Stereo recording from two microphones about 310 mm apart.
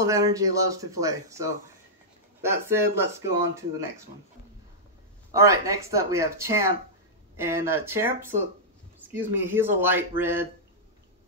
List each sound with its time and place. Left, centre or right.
0.0 s speech: centre
5.3 s speech: centre